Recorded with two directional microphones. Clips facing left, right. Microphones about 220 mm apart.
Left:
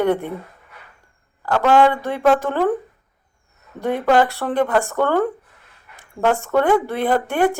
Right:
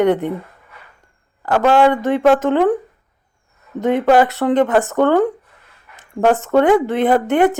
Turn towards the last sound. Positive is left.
turn(degrees=-20)  # may be behind; listen again after turning